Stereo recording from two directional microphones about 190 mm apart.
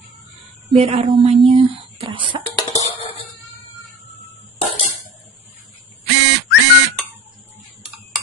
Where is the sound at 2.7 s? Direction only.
35° left (ahead or behind).